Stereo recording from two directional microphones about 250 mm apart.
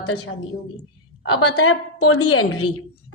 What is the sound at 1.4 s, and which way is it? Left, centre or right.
A woman's voice, left.